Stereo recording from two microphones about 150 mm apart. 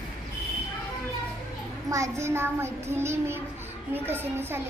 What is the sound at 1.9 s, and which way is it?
A child's voice, 20° right (ahead or behind).